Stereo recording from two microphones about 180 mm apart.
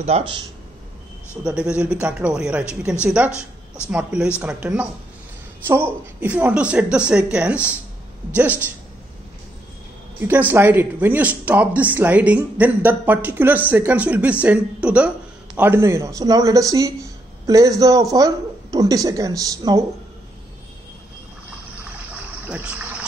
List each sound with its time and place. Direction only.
0.1 s speech: 35° right (ahead or behind)
1.4 s speech: 5° right (ahead or behind)
3.3 s a woman's voice: 15° left (ahead or behind)
3.9 s speech: 5° right (ahead or behind)
10.2 s speech: 10° right (ahead or behind)
22.5 s speech: 10° right (ahead or behind)